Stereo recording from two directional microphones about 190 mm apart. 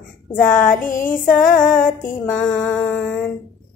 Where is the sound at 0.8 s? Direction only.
45° left (ahead or behind).